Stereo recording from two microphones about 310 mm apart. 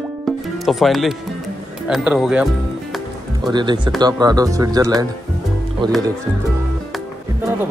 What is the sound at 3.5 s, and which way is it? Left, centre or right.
Speech, centre.